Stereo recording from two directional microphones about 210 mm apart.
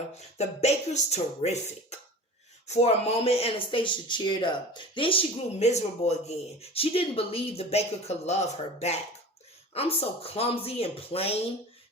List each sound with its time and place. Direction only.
0.3 s speech: 30° left (ahead or behind)